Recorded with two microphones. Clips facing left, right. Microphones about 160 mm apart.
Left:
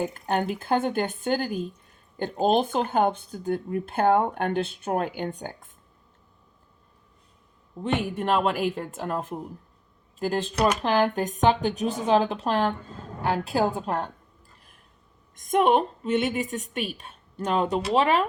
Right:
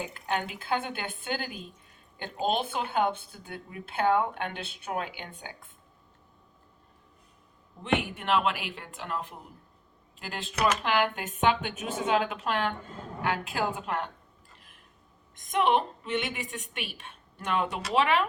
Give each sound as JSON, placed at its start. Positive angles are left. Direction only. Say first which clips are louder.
{"t": 0.0, "sound": "speech", "louder": "left 6 dB", "side_deg": 45}
{"t": 8.0, "sound": "a woman's voice", "louder": "left 4 dB", "side_deg": 40}
{"t": 15.5, "sound": "a woman's voice", "louder": "left 5 dB", "side_deg": 40}